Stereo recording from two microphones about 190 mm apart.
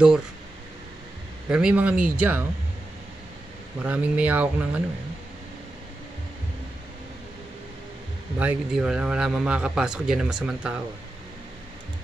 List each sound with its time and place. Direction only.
1.5 s a man's voice: 5° right (ahead or behind)
3.8 s speech: 5° right (ahead or behind)
8.4 s a man's voice: 5° right (ahead or behind)